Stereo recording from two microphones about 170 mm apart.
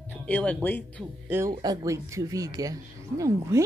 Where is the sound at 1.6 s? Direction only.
20° right (ahead or behind).